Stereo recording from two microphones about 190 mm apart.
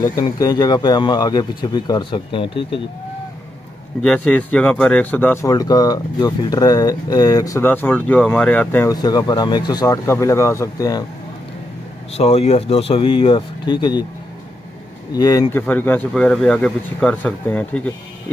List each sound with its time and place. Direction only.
0.0 s speech: 20° left (ahead or behind)
4.0 s speech: 5° left (ahead or behind)
8.9 s speech: 20° left (ahead or behind)
12.2 s speech: 35° left (ahead or behind)
15.1 s speech: 20° left (ahead or behind)
15.6 s speech: 10° left (ahead or behind)